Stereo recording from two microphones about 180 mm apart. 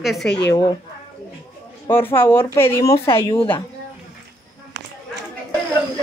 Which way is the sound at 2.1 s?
15° left (ahead or behind).